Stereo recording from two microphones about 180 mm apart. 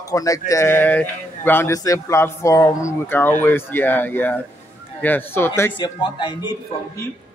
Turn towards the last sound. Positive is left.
turn(degrees=20)  # may be behind; listen again after turning